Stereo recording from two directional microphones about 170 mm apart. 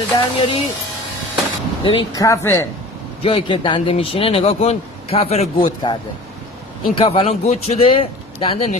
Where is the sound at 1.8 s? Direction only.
25° left (ahead or behind).